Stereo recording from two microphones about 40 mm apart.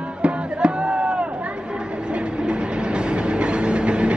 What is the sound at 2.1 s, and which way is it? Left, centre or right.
Train, right.